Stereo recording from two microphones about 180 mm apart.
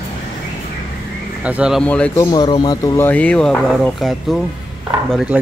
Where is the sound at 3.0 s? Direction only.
5° left (ahead or behind).